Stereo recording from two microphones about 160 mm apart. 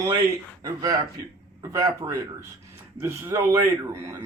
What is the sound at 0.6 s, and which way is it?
A man's voice, 20° right (ahead or behind).